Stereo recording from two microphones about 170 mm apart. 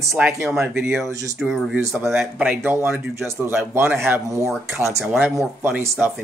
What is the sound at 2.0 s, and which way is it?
Speech, 15° right (ahead or behind).